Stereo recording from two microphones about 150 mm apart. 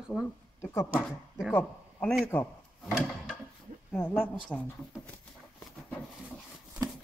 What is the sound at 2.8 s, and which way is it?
Drawer open or close, 5° left (ahead or behind).